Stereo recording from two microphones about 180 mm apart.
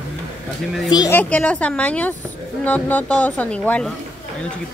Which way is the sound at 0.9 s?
20° left (ahead or behind).